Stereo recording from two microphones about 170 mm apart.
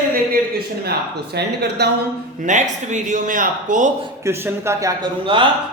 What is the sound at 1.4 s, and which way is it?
Speech, 75° right (ahead or behind).